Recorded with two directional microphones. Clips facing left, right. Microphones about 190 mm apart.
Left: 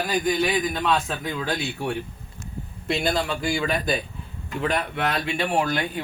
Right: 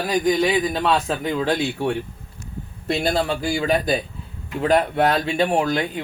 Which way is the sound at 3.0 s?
35° right (ahead or behind).